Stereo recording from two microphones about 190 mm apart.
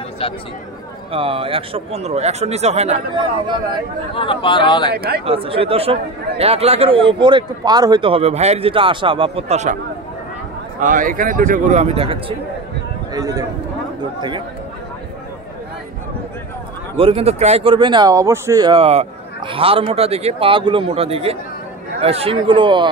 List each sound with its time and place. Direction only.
0.2 s speech: 30° left (ahead or behind)
1.1 s a man's voice: 30° right (ahead or behind)
4.1 s speech: 30° left (ahead or behind)
4.9 s speech: 55° right (ahead or behind)
5.2 s speech: 30° right (ahead or behind)
10.8 s a man's voice: 45° right (ahead or behind)
13.1 s speech: 20° right (ahead or behind)
16.9 s speech: 30° right (ahead or behind)